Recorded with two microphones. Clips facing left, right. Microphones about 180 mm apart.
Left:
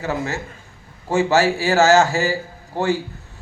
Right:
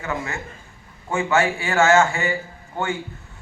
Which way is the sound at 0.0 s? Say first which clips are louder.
Left 4 dB; 35° left (ahead or behind).